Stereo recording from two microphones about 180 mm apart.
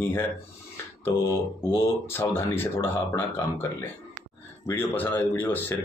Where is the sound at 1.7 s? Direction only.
15° left (ahead or behind).